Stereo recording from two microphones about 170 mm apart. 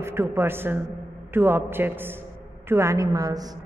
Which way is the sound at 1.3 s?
10° right (ahead or behind).